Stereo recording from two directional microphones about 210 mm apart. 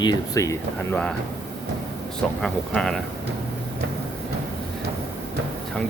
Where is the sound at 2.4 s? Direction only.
Centre (ahead or behind).